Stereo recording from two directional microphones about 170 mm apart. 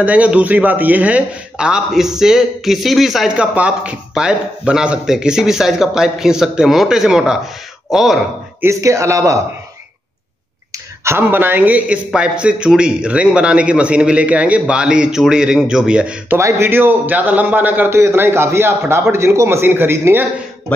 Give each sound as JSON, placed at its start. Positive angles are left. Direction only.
{"t": 0.0, "sound": "a man's voice", "side_deg": -10}
{"t": 8.6, "sound": "speech", "side_deg": -15}
{"t": 11.1, "sound": "speech", "side_deg": -10}